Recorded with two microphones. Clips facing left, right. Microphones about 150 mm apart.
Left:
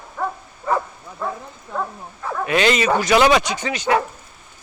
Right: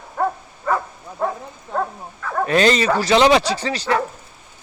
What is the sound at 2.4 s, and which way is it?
A man's voice, 35° right (ahead or behind).